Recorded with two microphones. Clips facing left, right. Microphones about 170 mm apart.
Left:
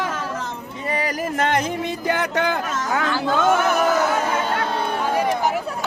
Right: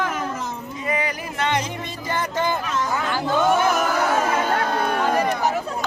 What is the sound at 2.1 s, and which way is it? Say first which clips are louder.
Music: left 1 dB; 70° left (ahead or behind).